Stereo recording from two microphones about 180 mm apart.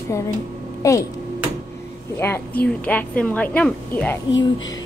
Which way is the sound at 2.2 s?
10° left (ahead or behind).